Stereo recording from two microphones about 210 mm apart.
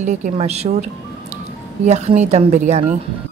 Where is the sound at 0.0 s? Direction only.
35° right (ahead or behind).